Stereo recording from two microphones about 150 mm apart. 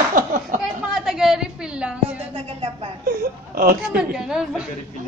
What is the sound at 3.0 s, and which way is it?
Speech, 80° right.